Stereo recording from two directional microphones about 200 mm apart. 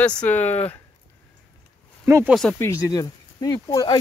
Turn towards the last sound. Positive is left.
turn(degrees=20)  # may be behind; listen again after turning